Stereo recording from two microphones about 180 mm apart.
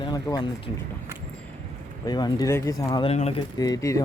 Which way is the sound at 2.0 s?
20° left (ahead or behind).